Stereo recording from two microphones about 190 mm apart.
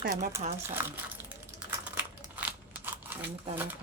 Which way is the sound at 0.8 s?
10° right (ahead or behind).